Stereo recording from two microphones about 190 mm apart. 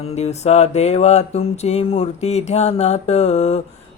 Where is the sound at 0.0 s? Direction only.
35° left (ahead or behind).